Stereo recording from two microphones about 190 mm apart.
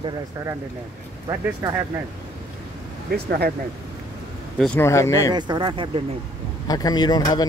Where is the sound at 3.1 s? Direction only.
55° right (ahead or behind).